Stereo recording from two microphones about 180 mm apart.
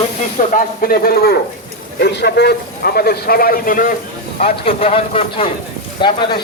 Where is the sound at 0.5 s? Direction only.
50° left (ahead or behind).